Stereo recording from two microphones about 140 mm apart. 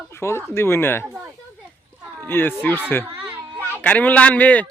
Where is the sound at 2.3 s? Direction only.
15° left (ahead or behind).